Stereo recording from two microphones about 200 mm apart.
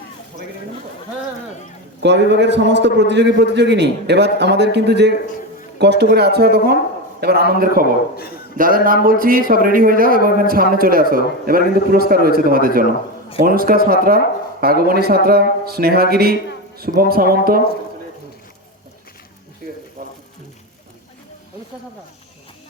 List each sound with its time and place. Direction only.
2.0 s a man's voice: 60° right (ahead or behind)